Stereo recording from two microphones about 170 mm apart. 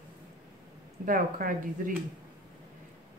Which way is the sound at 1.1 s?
55° right (ahead or behind).